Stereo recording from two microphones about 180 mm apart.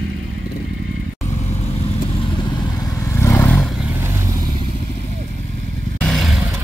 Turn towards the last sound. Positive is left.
turn(degrees=0)  # may be behind; listen again after turning